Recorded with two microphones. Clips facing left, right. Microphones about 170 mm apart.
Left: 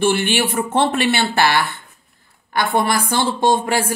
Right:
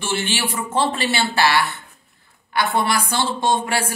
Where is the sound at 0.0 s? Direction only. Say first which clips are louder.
Left 7 dB; 55° left (ahead or behind).